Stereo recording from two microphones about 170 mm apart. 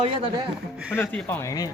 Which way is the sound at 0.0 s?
35° right (ahead or behind).